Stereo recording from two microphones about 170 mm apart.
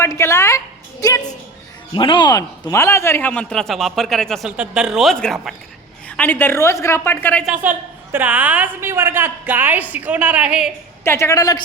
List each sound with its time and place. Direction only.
0.0 s a woman's voice: 15° left (ahead or behind)
7.4 s a woman's voice: 10° right (ahead or behind)
11.0 s a woman's voice: 15° left (ahead or behind)